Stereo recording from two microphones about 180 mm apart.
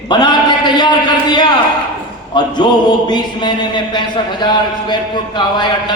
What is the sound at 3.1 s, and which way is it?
Speech, 25° left (ahead or behind).